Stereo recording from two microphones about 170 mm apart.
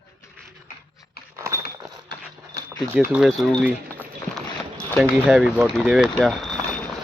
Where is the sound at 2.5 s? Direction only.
65° left (ahead or behind).